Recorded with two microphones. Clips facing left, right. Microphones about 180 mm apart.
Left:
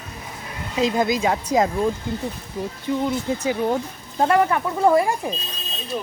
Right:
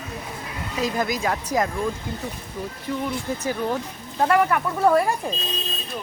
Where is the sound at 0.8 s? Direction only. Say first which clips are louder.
Left 5 dB; 25° left (ahead or behind).